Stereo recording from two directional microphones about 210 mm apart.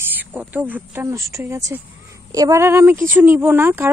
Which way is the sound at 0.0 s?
10° right (ahead or behind).